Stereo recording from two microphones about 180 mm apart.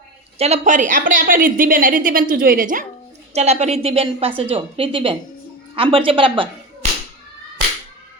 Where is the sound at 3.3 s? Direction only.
40° right (ahead or behind).